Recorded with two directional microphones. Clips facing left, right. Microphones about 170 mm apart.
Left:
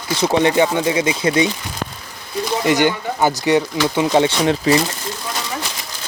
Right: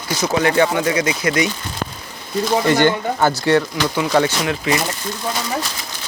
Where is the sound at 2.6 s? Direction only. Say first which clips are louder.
Left 1 dB; 15° left (ahead or behind); by 4.8 s 30° left (ahead or behind).